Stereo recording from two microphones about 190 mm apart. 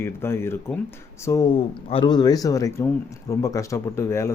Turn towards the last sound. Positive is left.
turn(degrees=15)  # may be behind; listen again after turning